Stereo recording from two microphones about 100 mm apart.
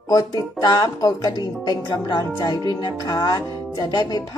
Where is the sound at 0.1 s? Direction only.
40° left (ahead or behind).